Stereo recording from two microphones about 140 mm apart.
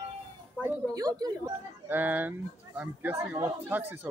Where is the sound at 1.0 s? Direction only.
25° right (ahead or behind).